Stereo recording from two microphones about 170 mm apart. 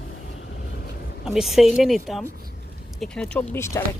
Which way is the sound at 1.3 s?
Centre (ahead or behind).